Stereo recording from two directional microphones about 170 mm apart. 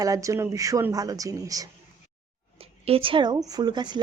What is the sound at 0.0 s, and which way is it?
Speech, 20° right (ahead or behind).